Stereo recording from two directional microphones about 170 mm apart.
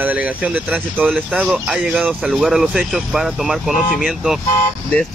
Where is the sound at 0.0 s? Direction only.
10° right (ahead or behind).